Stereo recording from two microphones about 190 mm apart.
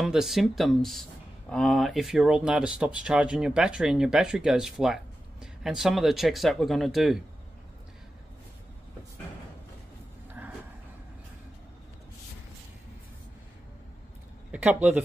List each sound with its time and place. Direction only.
0.0 s speech: centre (ahead or behind)
10.4 s a sound: 10° right (ahead or behind)
14.5 s speech: 5° right (ahead or behind)